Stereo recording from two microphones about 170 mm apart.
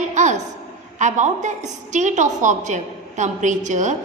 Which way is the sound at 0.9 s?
45° right (ahead or behind).